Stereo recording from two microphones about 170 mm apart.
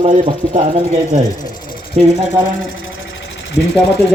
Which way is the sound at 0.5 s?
50° right (ahead or behind).